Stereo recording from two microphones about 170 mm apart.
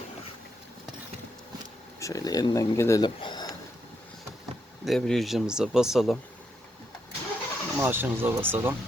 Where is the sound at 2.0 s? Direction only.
20° left (ahead or behind).